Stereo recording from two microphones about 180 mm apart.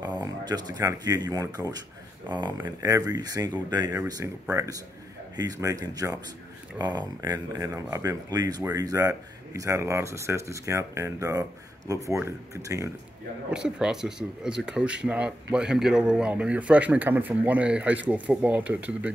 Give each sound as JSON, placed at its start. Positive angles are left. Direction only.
{"t": 0.0, "sound": "speech", "side_deg": -25}
{"t": 13.5, "sound": "speech", "side_deg": -5}